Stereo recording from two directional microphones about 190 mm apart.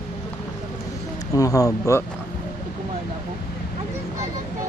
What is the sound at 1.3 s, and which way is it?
Speech, 15° left (ahead or behind).